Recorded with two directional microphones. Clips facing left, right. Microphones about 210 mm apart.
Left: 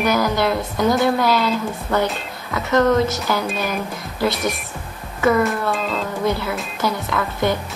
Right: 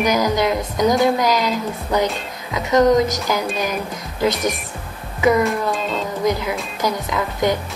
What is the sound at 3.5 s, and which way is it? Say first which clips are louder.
Speech: right 1 dB; centre (ahead or behind).